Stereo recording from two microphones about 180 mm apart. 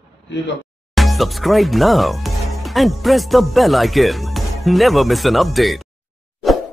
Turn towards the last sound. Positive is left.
turn(degrees=0)  # may be behind; listen again after turning